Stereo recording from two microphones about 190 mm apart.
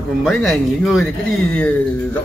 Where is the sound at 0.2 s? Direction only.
Centre (ahead or behind).